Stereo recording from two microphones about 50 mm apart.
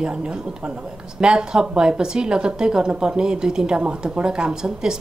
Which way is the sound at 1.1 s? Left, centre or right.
Centre.